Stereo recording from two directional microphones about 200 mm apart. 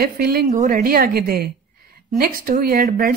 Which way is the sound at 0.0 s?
50° right (ahead or behind).